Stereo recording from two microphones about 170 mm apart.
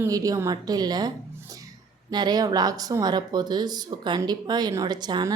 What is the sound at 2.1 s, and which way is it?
Speech, 25° right (ahead or behind).